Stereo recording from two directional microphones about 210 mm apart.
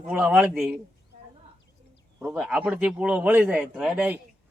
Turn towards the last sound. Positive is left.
turn(degrees=-5)  # may be behind; listen again after turning